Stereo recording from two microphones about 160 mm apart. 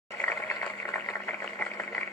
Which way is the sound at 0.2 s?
5° left (ahead or behind).